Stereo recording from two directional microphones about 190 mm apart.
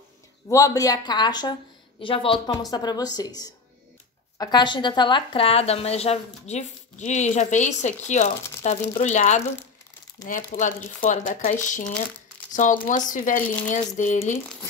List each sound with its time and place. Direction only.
0.5 s a woman's voice: 20° left (ahead or behind); by 14.4 s 35° left (ahead or behind)